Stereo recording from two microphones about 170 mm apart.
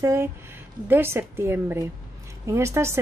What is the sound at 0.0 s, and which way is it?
A woman's voice, 15° right (ahead or behind).